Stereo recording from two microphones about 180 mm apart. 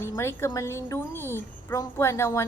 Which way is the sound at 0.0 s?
15° left (ahead or behind).